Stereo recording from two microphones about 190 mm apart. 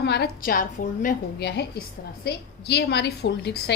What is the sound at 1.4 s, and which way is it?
A woman's voice, 60° left (ahead or behind).